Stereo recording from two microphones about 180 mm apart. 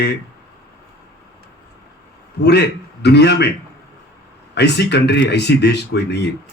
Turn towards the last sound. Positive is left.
turn(degrees=70)  # may be behind; listen again after turning